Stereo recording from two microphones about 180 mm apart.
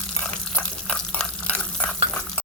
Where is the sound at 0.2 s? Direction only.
5° left (ahead or behind).